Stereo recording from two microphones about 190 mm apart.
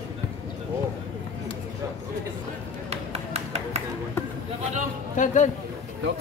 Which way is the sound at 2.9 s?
35° right (ahead or behind).